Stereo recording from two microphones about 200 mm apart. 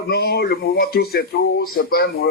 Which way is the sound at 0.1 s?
55° left (ahead or behind).